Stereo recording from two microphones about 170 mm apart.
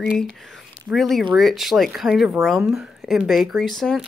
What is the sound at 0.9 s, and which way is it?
Speech, centre (ahead or behind).